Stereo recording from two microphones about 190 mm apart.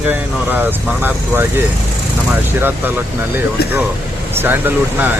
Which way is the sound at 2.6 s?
10° right (ahead or behind).